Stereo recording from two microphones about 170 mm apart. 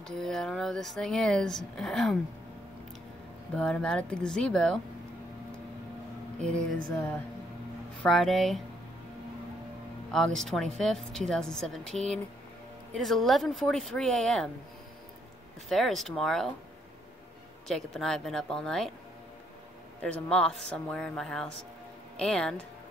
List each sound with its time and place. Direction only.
0.0 s speech: centre (ahead or behind)
3.5 s speech: 5° left (ahead or behind)
8.0 s speech: centre (ahead or behind)
10.1 s speech: 5° left (ahead or behind)
15.7 s speech: centre (ahead or behind)
17.6 s speech: centre (ahead or behind)
20.0 s speech: 5° left (ahead or behind)